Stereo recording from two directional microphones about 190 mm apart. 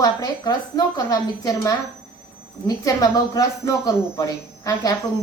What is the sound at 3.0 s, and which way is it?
A woman's voice, 20° left (ahead or behind).